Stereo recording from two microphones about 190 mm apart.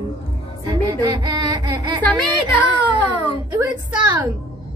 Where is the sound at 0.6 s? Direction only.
20° right (ahead or behind).